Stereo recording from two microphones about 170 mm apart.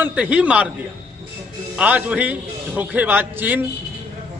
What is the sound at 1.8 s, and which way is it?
A man's voice, 10° right (ahead or behind).